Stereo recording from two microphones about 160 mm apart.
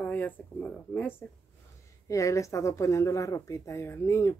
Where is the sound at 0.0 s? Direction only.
10° left (ahead or behind).